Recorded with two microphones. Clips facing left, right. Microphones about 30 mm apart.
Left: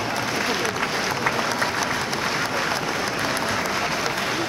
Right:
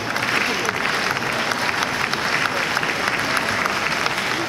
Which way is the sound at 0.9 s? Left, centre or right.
Right.